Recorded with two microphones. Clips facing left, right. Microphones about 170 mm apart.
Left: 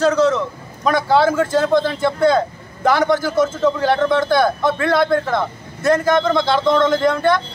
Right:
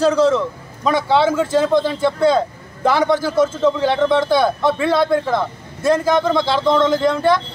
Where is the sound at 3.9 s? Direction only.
5° right (ahead or behind).